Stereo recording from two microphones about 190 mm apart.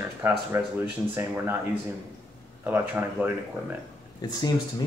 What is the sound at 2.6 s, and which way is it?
Speech, 10° right (ahead or behind).